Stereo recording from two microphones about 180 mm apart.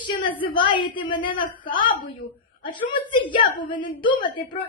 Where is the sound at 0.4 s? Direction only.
30° left (ahead or behind).